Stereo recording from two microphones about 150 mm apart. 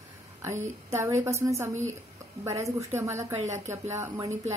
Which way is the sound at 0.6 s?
20° right (ahead or behind).